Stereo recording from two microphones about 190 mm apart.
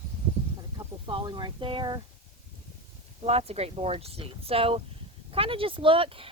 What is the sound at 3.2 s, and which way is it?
Speech, 35° right (ahead or behind).